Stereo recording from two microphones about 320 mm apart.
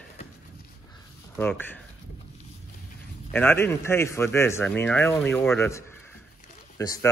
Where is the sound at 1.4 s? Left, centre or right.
Centre.